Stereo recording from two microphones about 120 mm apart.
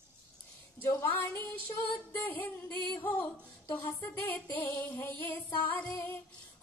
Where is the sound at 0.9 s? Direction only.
20° left (ahead or behind).